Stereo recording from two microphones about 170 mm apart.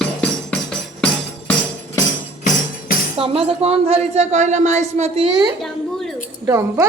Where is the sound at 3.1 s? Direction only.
35° right (ahead or behind).